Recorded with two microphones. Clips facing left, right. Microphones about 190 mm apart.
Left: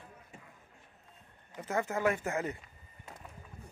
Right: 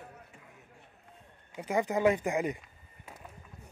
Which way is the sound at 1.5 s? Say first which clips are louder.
Right 4 dB; 15° right (ahead or behind).